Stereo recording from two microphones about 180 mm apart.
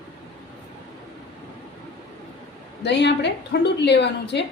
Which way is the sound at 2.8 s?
75° left (ahead or behind).